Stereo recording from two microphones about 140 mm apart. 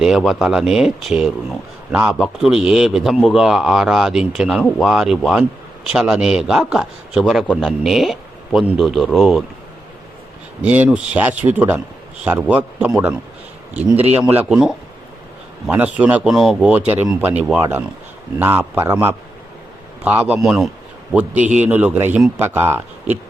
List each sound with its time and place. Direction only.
0.0 s speech: centre (ahead or behind)
7.4 s a man's voice: 10° left (ahead or behind)
10.6 s speech: 10° right (ahead or behind)